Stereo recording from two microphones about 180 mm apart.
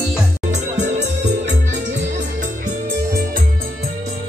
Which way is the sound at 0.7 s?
40° right (ahead or behind).